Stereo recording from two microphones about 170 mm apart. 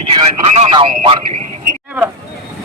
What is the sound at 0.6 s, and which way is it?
Speech, 30° right (ahead or behind).